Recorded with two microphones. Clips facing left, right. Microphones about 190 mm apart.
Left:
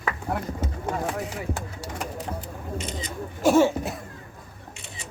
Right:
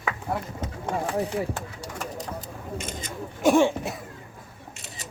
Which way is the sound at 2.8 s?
50° right (ahead or behind).